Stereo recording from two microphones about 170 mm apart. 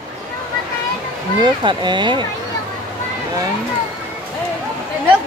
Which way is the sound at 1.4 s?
30° right (ahead or behind).